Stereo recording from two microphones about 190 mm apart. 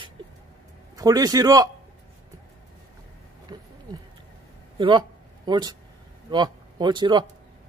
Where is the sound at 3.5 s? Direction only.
20° right (ahead or behind).